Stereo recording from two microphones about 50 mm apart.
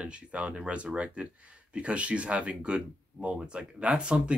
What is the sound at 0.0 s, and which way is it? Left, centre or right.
Speech, right.